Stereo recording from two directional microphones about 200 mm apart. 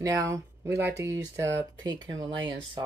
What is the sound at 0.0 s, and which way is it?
Speech, 15° right (ahead or behind).